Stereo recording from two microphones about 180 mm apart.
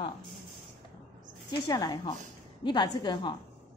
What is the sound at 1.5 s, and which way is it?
A woman's voice, 25° left (ahead or behind).